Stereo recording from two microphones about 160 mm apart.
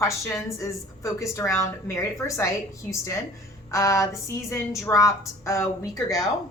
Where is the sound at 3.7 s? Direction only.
20° left (ahead or behind).